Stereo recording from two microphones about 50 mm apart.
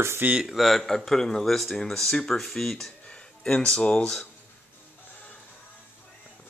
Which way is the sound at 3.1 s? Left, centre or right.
Centre.